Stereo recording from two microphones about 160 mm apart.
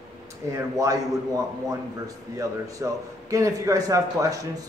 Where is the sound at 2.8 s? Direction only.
20° right (ahead or behind).